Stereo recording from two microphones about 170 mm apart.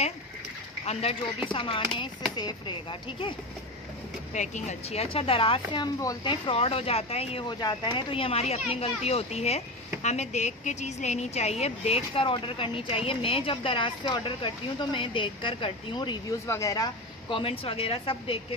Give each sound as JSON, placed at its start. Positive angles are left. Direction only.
{"t": 1.5, "sound": "a woman's voice", "side_deg": 30}
{"t": 4.3, "sound": "a woman's voice", "side_deg": 45}